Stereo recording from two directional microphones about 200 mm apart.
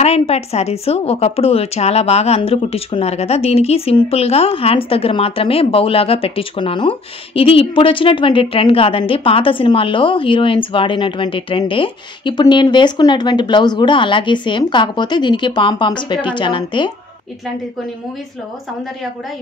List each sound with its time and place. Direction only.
0.0 s a woman's voice: 30° left (ahead or behind)